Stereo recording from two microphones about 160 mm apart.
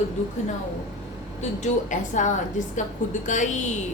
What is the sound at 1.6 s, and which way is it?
A woman's voice, 50° left (ahead or behind).